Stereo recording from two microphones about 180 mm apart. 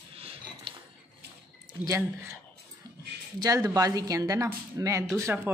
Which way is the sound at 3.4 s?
20° right (ahead or behind).